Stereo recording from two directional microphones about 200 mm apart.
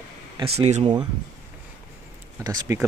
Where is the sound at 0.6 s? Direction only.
35° right (ahead or behind).